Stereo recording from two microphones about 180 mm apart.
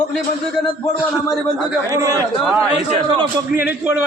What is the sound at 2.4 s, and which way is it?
A man's voice, centre (ahead or behind).